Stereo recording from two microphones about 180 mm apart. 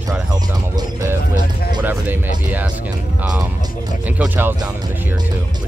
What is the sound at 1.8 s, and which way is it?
Speech, 10° right (ahead or behind).